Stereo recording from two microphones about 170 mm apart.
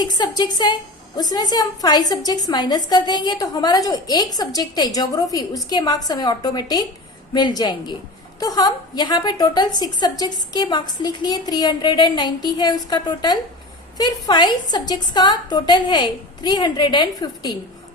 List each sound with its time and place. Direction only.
0.0 s a woman's voice: 25° left (ahead or behind)